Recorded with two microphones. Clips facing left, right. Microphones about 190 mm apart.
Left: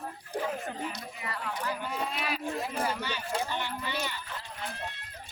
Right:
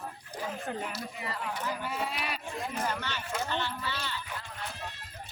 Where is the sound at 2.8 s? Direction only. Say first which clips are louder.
Left 1 dB; 10° left (ahead or behind).